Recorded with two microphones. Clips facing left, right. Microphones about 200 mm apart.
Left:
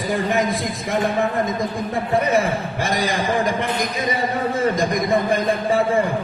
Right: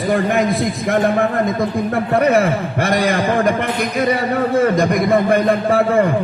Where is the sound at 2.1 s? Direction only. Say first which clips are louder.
Right 4 dB; 65° right (ahead or behind).